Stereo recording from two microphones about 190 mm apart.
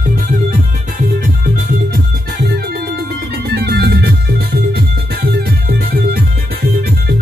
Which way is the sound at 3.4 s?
60° right (ahead or behind).